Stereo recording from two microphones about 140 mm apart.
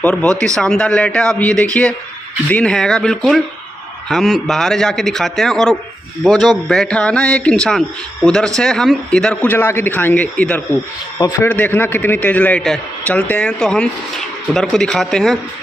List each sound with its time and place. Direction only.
0.0 s a man's voice: 10° left (ahead or behind)
11.1 s a man's voice: 25° left (ahead or behind)
11.4 s a man's voice: 10° left (ahead or behind)